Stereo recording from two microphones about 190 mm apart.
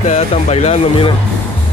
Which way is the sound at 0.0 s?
35° left (ahead or behind).